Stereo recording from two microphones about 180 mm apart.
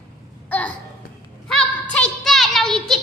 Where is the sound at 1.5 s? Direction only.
5° left (ahead or behind).